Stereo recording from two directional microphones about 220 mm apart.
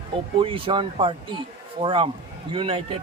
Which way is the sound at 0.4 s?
25° right (ahead or behind).